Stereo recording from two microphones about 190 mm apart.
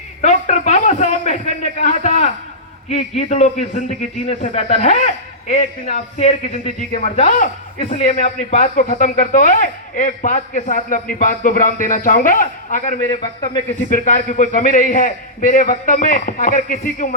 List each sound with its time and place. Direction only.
0.2 s a sound: 40° left (ahead or behind)
2.9 s a man's voice: 35° left (ahead or behind)
13.0 s a man's voice: 20° left (ahead or behind)
13.9 s a man's voice: 40° left (ahead or behind)